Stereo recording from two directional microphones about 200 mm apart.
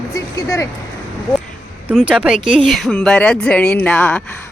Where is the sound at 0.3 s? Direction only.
15° left (ahead or behind).